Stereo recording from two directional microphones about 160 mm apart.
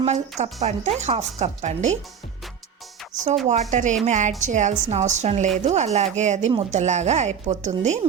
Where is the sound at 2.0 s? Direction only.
Centre (ahead or behind).